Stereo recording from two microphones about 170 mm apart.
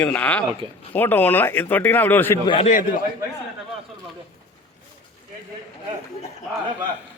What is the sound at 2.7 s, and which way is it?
Speech, 55° left (ahead or behind).